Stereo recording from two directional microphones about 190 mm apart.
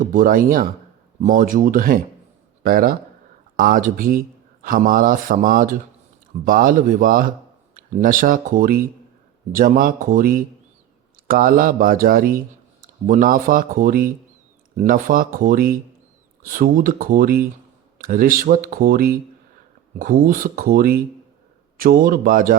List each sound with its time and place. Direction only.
0.0 s speech: 45° right (ahead or behind)